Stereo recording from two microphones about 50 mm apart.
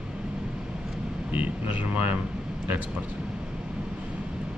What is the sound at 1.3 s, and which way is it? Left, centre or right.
Speech, right.